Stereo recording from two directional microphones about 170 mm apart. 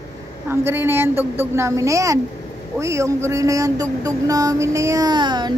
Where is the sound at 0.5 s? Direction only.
10° right (ahead or behind).